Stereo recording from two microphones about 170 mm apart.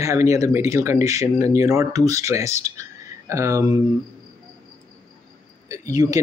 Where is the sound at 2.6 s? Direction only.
20° right (ahead or behind).